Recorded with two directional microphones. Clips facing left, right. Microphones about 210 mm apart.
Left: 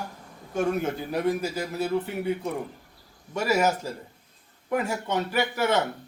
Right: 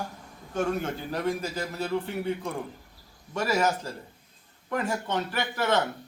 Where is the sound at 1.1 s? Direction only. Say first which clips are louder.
Left 3 dB; 10° left (ahead or behind).